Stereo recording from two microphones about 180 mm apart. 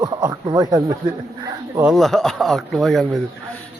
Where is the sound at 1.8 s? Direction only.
Centre (ahead or behind).